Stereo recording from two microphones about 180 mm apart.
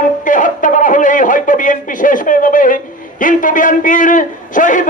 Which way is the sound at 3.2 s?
45° left (ahead or behind).